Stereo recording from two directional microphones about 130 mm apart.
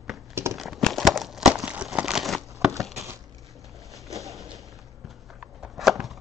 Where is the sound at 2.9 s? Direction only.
20° right (ahead or behind).